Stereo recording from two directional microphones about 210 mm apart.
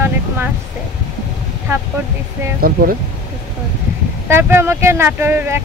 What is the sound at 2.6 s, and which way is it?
Speech, 45° right (ahead or behind).